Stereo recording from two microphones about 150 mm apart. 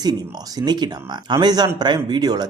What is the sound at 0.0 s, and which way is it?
A man's voice, 25° right (ahead or behind).